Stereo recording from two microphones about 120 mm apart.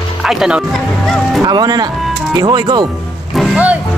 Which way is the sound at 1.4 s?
35° right (ahead or behind).